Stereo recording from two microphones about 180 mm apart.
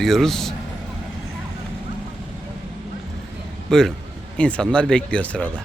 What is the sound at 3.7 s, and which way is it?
Speech, 5° left (ahead or behind).